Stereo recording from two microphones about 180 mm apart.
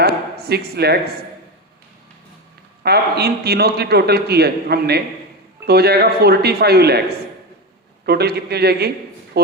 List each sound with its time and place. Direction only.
0.0 s a sound: 60° right (ahead or behind)
2.8 s a man's voice: 65° right (ahead or behind)
8.0 s a man's voice: 60° right (ahead or behind)